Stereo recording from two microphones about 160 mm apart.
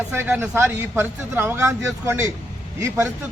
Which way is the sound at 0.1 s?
15° right (ahead or behind).